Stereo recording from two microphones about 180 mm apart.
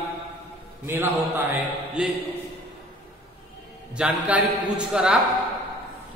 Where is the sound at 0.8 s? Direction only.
10° right (ahead or behind).